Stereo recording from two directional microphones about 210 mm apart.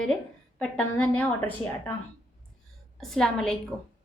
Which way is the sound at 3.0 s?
Centre (ahead or behind).